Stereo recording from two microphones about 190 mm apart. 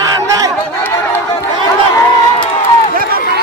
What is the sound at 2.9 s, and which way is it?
Run, 50° right (ahead or behind).